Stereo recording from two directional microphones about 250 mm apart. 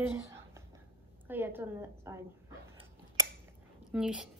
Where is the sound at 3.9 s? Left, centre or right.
Centre.